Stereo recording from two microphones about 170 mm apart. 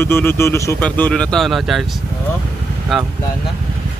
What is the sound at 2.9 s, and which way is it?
Speech, centre (ahead or behind).